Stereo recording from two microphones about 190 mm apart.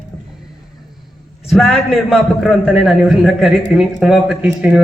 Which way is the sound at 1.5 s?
Centre (ahead or behind).